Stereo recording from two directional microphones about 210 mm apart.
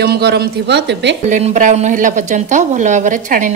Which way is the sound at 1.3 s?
35° right (ahead or behind).